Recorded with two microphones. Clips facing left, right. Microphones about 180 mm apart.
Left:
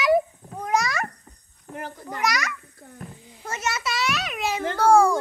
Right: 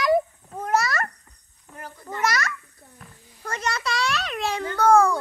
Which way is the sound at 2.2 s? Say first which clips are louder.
Right 1 dB; centre (ahead or behind).